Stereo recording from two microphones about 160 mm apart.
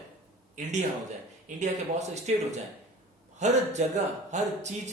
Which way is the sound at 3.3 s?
45° right (ahead or behind).